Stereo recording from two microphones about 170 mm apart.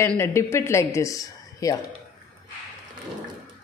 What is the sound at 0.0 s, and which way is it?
A man's voice, 15° left (ahead or behind).